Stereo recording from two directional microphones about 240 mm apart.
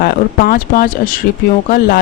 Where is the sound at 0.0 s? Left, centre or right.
Left.